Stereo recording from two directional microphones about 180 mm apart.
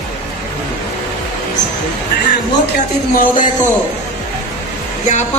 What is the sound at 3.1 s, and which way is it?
Speech, 45° left (ahead or behind).